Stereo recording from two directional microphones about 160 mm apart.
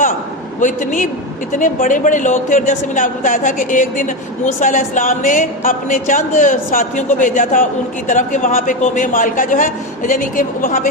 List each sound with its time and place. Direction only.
0.6 s a woman's voice: 50° left (ahead or behind)